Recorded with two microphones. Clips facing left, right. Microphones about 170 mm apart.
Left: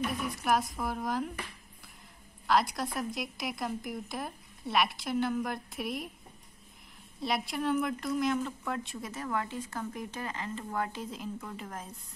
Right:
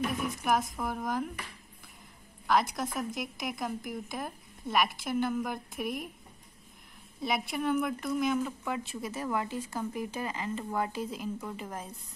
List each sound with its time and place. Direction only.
0.4 s speech: centre (ahead or behind)
2.4 s speech: centre (ahead or behind)
7.2 s speech: centre (ahead or behind)